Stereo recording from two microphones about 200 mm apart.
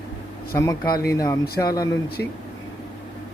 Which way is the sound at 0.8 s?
50° left (ahead or behind).